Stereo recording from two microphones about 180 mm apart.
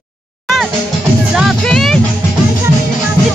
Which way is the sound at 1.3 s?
Centre (ahead or behind).